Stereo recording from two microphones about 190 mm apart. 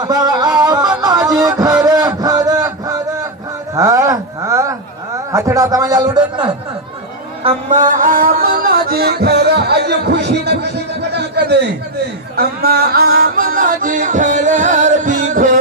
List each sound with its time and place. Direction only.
0.0 s music: 20° right (ahead or behind)
3.7 s a sound: 15° right (ahead or behind)
5.3 s a man's voice: 15° right (ahead or behind)
7.4 s music: 40° right (ahead or behind)